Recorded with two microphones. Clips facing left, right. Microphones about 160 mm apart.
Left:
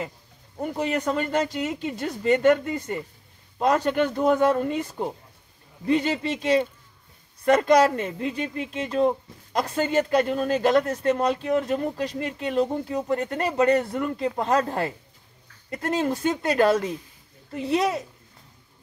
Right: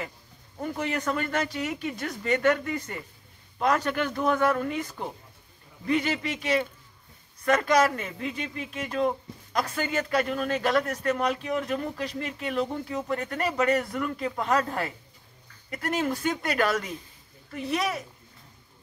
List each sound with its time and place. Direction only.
0.6 s speech: 20° left (ahead or behind)